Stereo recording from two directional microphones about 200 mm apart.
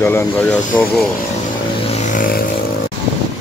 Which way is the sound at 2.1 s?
45° left (ahead or behind).